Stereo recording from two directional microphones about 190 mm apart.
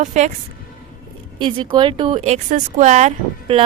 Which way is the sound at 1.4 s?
25° right (ahead or behind).